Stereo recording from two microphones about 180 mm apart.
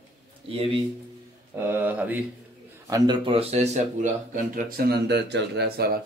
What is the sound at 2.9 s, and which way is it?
Speech, 25° right (ahead or behind).